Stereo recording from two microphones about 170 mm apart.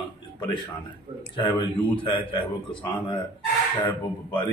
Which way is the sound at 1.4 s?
30° left (ahead or behind).